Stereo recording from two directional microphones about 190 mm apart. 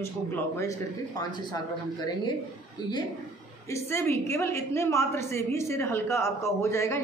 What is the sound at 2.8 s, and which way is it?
A woman's voice, 25° left (ahead or behind).